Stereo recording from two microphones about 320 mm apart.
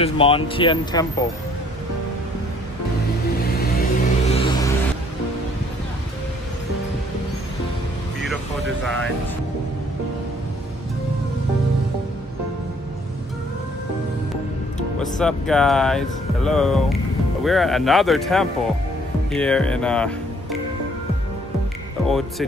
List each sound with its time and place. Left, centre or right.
0.0 s speech: centre
3.4 s vehicle: left; by 4.7 s centre
8.8 s speech: centre
15.0 s speech: centre